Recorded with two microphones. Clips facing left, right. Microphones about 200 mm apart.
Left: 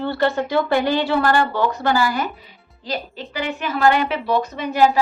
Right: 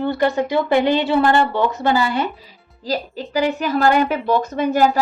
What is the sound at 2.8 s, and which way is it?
A woman's voice, 40° right (ahead or behind).